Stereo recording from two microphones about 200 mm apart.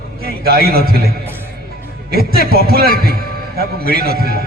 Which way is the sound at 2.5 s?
50° right (ahead or behind).